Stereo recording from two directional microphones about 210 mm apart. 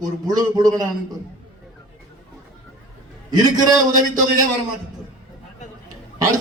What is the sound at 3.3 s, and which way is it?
Speech, 20° right (ahead or behind).